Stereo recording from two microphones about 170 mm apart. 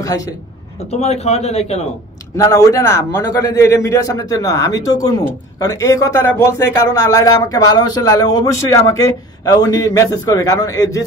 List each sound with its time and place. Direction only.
1.0 s speech: 40° left (ahead or behind)
2.3 s a man's voice: 20° left (ahead or behind)